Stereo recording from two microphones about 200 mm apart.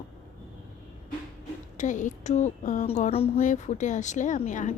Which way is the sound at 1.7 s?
40° left (ahead or behind).